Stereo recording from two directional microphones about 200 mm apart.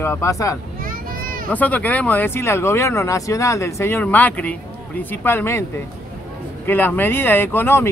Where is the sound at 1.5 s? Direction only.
10° left (ahead or behind).